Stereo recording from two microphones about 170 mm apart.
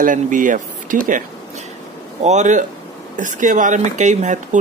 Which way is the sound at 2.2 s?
45° right (ahead or behind).